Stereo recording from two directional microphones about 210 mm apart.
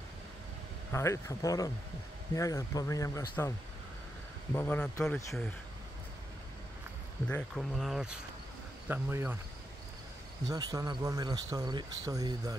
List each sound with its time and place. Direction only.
0.9 s speech: 15° left (ahead or behind)
4.6 s speech: 10° left (ahead or behind)
7.2 s speech: 5° left (ahead or behind)
10.5 s speech: 15° right (ahead or behind)